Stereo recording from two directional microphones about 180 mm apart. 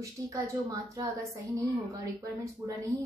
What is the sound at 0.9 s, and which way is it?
A woman's voice, 20° right (ahead or behind).